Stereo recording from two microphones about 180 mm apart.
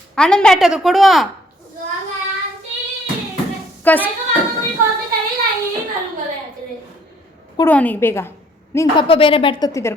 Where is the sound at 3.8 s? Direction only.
10° left (ahead or behind).